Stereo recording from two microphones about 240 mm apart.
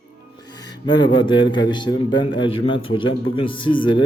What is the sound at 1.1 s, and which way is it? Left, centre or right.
Speech, centre.